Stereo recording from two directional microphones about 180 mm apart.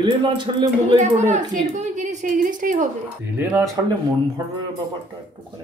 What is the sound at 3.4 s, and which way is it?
Speech, 10° right (ahead or behind).